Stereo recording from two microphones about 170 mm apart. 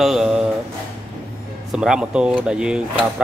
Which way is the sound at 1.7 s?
5° right (ahead or behind).